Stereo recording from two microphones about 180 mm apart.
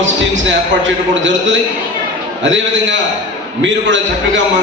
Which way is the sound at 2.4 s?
90° right.